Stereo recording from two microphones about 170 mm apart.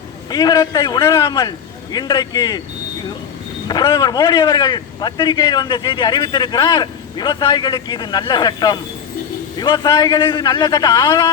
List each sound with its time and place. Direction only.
0.3 s a man's voice: 25° left (ahead or behind)
3.7 s a man's voice: 25° left (ahead or behind)